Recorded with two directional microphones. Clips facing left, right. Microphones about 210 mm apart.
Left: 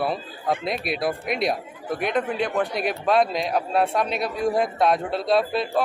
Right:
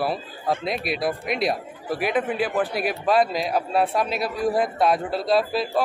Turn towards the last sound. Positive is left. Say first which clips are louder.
# even
turn(degrees=0)  # may be behind; listen again after turning